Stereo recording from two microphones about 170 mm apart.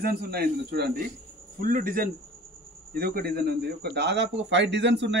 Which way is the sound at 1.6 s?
55° right (ahead or behind).